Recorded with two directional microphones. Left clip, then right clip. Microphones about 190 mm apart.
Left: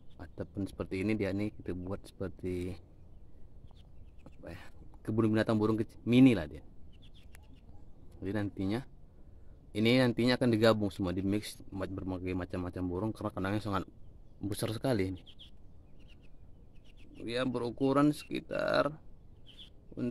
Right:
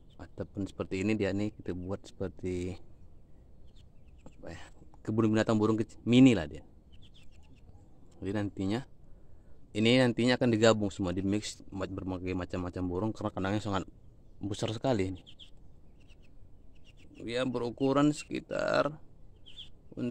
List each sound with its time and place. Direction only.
0.2 s speech: 15° right (ahead or behind)
4.2 s speech: 15° right (ahead or behind)
8.2 s speech: 15° right (ahead or behind)
17.2 s speech: 10° right (ahead or behind)